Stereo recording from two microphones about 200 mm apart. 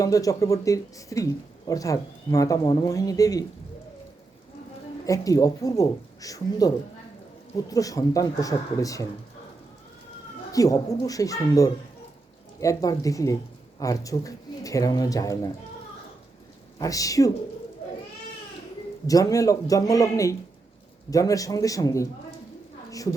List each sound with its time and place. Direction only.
0.0 s speech: 15° left (ahead or behind)
5.0 s speech: 15° left (ahead or behind)
10.5 s speech: 15° left (ahead or behind)
16.7 s speech: 15° left (ahead or behind)
19.0 s speech: 15° left (ahead or behind)